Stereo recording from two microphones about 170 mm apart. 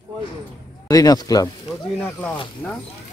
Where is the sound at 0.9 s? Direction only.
20° left (ahead or behind).